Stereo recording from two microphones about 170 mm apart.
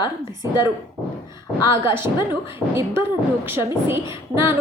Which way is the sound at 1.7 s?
15° right (ahead or behind).